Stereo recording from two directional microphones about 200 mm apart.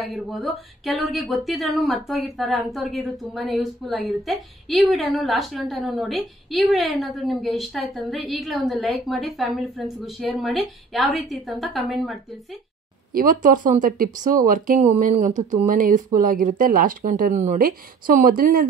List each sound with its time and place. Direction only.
0.0 s speech: centre (ahead or behind)
13.1 s speech: 45° right (ahead or behind)